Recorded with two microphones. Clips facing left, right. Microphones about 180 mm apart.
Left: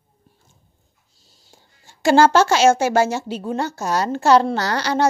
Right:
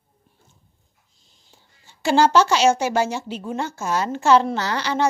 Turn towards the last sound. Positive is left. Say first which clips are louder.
# left 3 dB
turn(degrees=40)  # may be behind; listen again after turning